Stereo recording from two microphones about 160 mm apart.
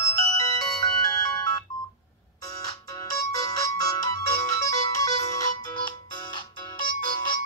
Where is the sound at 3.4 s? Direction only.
25° left (ahead or behind).